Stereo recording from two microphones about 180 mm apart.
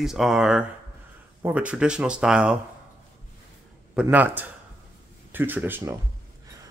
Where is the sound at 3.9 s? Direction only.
10° right (ahead or behind).